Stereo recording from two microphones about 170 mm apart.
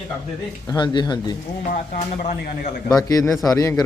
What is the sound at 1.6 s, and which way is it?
Speech, 50° left (ahead or behind).